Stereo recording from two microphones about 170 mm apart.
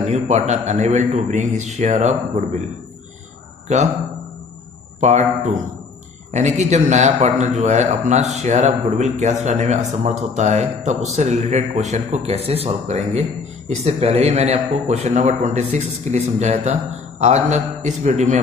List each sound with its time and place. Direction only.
0.0 s a man's voice: 40° right (ahead or behind)
3.6 s a man's voice: 40° right (ahead or behind)
5.0 s a man's voice: 40° right (ahead or behind)